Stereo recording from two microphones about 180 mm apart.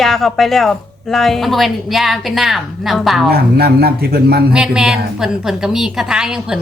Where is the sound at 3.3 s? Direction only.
60° right (ahead or behind).